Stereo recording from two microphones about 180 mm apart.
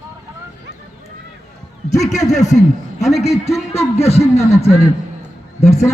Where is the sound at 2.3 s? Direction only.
40° left (ahead or behind).